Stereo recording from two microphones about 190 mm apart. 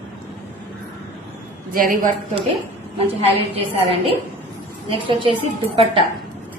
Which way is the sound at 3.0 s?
30° right (ahead or behind).